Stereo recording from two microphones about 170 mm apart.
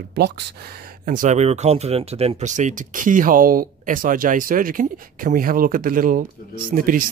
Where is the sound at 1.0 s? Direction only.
50° right (ahead or behind).